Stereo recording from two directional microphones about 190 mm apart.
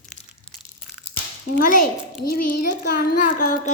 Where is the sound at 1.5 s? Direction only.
45° left (ahead or behind).